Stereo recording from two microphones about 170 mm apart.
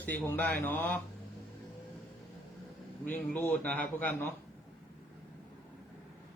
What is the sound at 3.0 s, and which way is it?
Speech, 10° left (ahead or behind).